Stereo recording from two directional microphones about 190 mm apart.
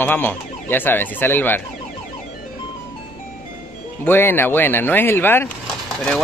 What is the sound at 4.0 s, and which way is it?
Speech, 10° left (ahead or behind).